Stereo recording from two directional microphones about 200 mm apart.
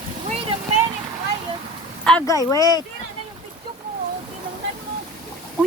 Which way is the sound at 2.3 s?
15° left (ahead or behind).